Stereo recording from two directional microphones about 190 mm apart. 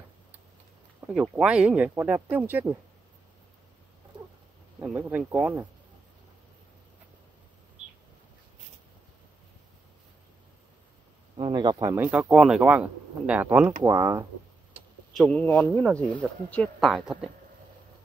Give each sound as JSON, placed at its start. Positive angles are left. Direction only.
{"t": 1.0, "sound": "speech", "side_deg": -5}
{"t": 4.7, "sound": "speech", "side_deg": -10}
{"t": 11.3, "sound": "speech", "side_deg": -25}
{"t": 14.7, "sound": "vehicle", "side_deg": 0}
{"t": 16.2, "sound": "speech", "side_deg": 5}